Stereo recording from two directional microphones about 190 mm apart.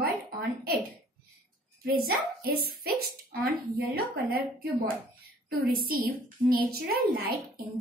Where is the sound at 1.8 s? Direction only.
55° right (ahead or behind).